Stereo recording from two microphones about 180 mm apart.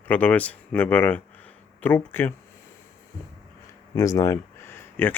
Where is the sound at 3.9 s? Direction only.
15° left (ahead or behind).